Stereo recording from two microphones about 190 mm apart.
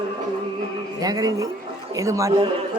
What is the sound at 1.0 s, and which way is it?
Speech, 20° right (ahead or behind).